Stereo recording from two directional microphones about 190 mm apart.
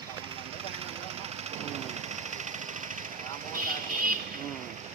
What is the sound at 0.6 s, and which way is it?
Vehicle, 30° right (ahead or behind).